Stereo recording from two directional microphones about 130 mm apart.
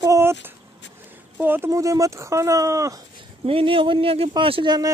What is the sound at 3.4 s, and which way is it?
Speech, 45° right (ahead or behind).